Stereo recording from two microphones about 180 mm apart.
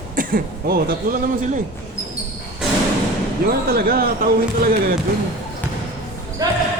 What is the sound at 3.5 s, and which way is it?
Speech, 60° right (ahead or behind).